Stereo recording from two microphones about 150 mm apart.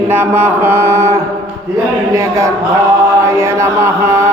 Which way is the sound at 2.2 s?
20° right (ahead or behind).